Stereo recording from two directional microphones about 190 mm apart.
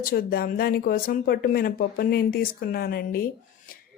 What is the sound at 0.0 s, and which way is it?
Speech, 50° left (ahead or behind).